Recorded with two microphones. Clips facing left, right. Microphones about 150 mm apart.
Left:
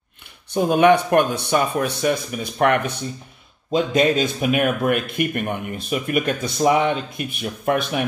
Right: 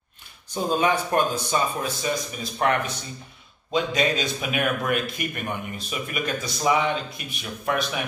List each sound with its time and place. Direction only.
0.6 s speech: 65° left (ahead or behind)
3.7 s speech: 50° left (ahead or behind)